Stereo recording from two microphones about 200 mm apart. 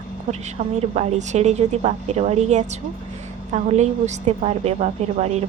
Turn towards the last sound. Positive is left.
turn(degrees=-35)  # may be behind; listen again after turning